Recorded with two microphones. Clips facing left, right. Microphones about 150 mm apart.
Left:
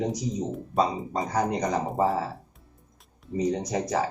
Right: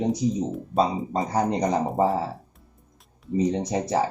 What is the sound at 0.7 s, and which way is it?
Speech, centre (ahead or behind).